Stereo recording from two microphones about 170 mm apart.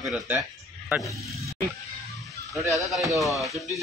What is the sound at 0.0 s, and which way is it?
Speech, 5° right (ahead or behind).